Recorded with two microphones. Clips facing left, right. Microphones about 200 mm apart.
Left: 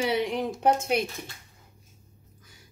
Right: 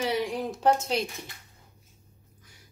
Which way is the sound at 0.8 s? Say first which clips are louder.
Left 3 dB; 55° left (ahead or behind).